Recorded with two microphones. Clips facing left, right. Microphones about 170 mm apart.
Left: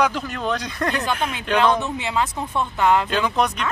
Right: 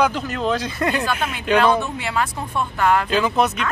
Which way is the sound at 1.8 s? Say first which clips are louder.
Even; 20° left (ahead or behind).